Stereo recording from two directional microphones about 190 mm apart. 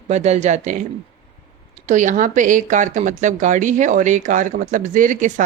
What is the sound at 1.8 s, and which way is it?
Speech, 40° right (ahead or behind).